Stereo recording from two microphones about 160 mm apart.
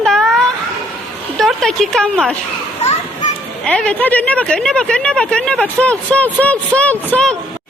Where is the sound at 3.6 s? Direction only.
5° left (ahead or behind).